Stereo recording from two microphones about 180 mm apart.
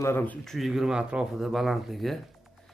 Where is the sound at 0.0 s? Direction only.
10° left (ahead or behind).